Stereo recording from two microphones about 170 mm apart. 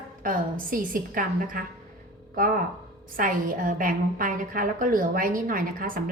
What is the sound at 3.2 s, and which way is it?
A woman's voice, 55° right (ahead or behind).